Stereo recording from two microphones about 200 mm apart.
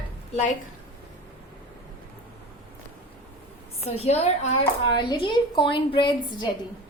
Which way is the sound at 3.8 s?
30° left (ahead or behind).